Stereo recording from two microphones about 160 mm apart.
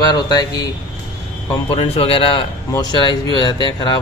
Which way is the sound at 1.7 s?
35° left (ahead or behind).